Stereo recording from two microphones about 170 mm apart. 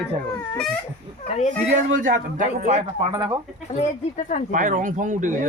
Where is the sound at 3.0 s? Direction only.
20° right (ahead or behind).